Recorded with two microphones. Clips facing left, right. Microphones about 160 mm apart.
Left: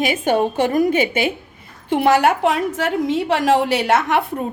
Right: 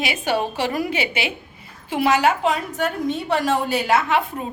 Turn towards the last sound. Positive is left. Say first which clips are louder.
# left 2 dB
turn(degrees=70)  # may be behind; listen again after turning